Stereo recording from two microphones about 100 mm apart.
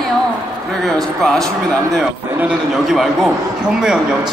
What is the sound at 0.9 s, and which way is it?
Speech, 5° left (ahead or behind).